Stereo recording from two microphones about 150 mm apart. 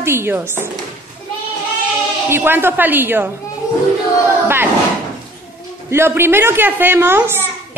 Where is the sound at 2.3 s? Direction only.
15° right (ahead or behind).